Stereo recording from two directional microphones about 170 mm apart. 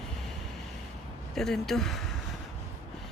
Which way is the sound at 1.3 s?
Centre (ahead or behind).